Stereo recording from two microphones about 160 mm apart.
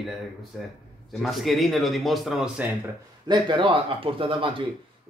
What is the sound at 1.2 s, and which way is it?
A man's voice, centre (ahead or behind).